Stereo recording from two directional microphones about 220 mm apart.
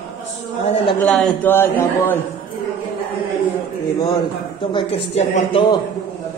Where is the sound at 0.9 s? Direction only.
5° left (ahead or behind).